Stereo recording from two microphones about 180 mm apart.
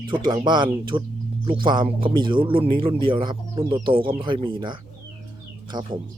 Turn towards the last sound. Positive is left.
turn(degrees=-25)  # may be behind; listen again after turning